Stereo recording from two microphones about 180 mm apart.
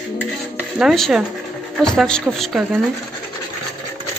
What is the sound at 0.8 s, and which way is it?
Speech, centre (ahead or behind).